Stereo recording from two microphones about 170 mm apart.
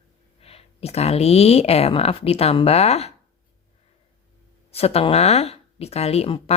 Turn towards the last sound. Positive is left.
turn(degrees=35)  # may be behind; listen again after turning